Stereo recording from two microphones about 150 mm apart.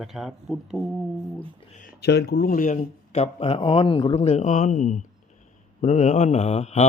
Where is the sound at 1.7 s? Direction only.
60° left (ahead or behind).